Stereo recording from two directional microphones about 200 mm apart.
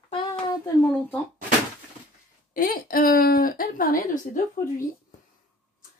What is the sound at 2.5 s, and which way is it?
A woman's voice, 45° left (ahead or behind).